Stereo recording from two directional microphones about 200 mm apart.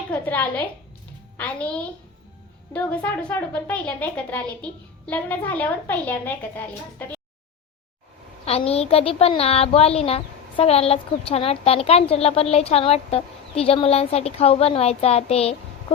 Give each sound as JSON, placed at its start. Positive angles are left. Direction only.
{"t": 0.1, "sound": "a woman's voice", "side_deg": 10}
{"t": 8.4, "sound": "speech", "side_deg": 30}